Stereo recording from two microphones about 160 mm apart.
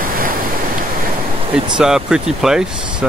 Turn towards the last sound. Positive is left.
turn(degrees=-5)  # may be behind; listen again after turning